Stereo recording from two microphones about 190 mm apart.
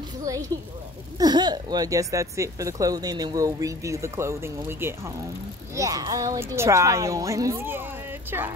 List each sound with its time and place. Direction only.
0.2 s a woman's voice: 15° right (ahead or behind)